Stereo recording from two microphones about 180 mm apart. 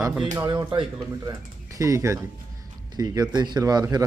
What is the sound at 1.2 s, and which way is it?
Speech, 20° right (ahead or behind).